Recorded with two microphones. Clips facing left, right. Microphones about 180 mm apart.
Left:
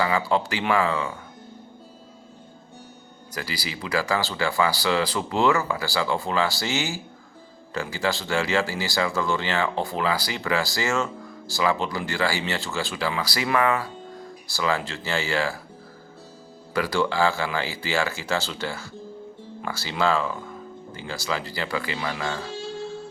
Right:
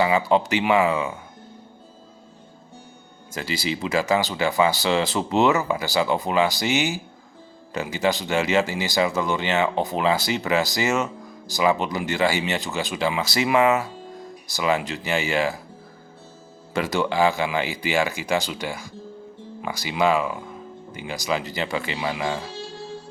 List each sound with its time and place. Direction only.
0.0 s speech: 20° right (ahead or behind)
3.3 s speech: 25° right (ahead or behind)
16.7 s speech: 20° right (ahead or behind)